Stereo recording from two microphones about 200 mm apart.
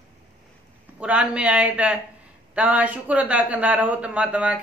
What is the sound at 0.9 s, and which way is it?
Speech, 5° right (ahead or behind).